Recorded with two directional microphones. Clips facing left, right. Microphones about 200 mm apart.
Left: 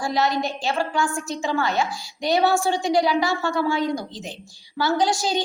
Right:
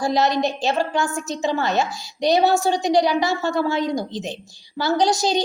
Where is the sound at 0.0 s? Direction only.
20° right (ahead or behind).